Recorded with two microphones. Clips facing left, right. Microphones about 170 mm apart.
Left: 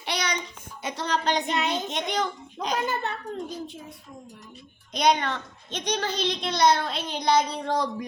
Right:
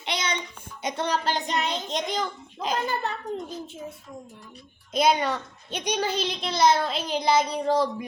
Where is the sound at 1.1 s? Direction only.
5° right (ahead or behind).